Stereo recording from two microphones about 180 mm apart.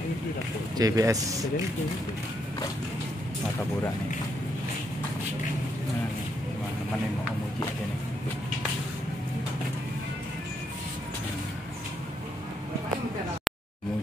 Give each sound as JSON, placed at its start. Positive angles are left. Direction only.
{"t": 0.7, "sound": "speech", "side_deg": -20}